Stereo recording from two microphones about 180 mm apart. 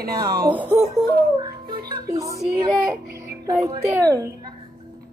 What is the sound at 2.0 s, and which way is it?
Speech, 20° right (ahead or behind).